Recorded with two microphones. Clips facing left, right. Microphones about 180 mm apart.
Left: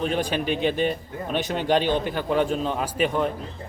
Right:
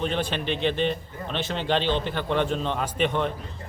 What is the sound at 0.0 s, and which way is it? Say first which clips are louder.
A man's voice: left 2 dB; 10° left (ahead or behind).